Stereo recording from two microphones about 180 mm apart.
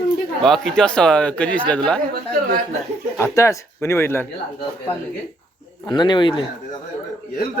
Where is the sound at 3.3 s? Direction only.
15° left (ahead or behind).